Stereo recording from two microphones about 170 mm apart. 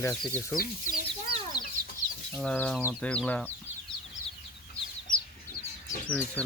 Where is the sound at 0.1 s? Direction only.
5° left (ahead or behind).